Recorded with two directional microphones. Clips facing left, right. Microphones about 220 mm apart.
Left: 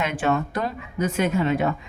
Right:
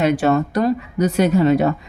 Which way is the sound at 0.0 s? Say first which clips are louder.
Right 7 dB; 35° right (ahead or behind).